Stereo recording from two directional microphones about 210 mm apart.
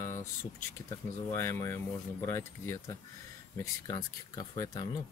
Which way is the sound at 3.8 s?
15° left (ahead or behind).